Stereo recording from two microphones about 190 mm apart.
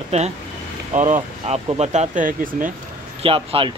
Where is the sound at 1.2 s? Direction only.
30° right (ahead or behind); by 2.7 s 45° right (ahead or behind).